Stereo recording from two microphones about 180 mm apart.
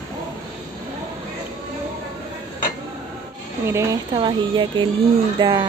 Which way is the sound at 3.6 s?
15° right (ahead or behind).